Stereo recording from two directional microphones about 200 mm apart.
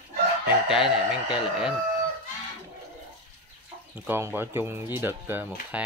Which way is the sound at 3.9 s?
10° right (ahead or behind).